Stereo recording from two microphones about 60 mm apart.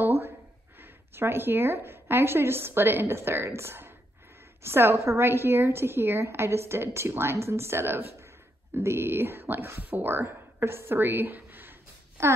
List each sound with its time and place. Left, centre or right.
0.7 s a woman's voice: right
12.2 s a child's voice: right